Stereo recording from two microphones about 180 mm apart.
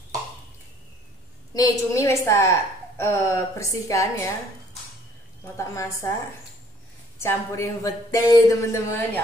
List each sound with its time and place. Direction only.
1.5 s speech: 20° left (ahead or behind)
5.6 s speech: 15° left (ahead or behind)
7.2 s speech: 15° left (ahead or behind)